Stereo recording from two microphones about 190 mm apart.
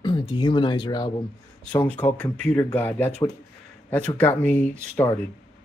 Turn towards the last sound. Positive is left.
turn(degrees=10)  # may be behind; listen again after turning